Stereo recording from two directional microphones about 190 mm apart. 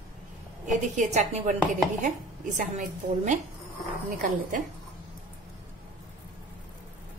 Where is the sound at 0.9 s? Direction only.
40° right (ahead or behind).